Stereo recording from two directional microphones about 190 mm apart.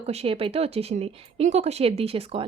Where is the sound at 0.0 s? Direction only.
35° right (ahead or behind).